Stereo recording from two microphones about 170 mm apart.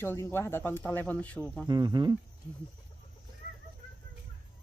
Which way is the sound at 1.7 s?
25° right (ahead or behind).